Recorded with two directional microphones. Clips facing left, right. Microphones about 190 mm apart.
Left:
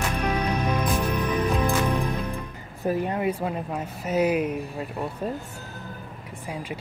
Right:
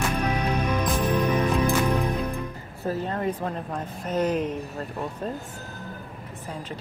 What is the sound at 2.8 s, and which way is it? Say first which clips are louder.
Speech: left 2 dB; 15° left (ahead or behind).